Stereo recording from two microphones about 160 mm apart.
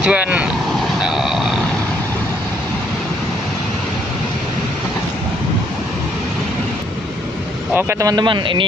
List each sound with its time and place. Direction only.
0.0 s vehicle: 10° right (ahead or behind)
7.7 s speech: 20° right (ahead or behind)